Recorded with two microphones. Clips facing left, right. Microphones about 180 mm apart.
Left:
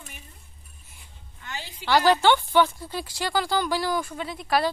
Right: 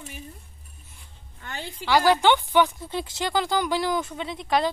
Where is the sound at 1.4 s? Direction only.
55° right (ahead or behind).